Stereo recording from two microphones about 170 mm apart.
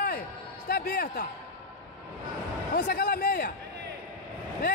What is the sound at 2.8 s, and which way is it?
Speech, 60° left (ahead or behind).